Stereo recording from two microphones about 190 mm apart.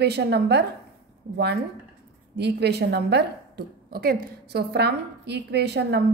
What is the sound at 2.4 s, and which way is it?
A woman's voice, 60° right (ahead or behind).